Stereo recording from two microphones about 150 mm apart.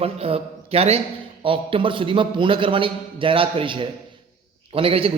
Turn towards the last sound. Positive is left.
turn(degrees=-40)  # may be behind; listen again after turning